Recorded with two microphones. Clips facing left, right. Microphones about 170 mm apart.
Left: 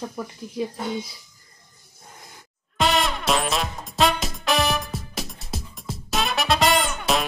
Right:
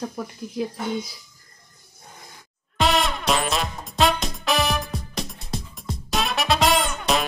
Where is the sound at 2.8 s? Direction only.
Centre (ahead or behind).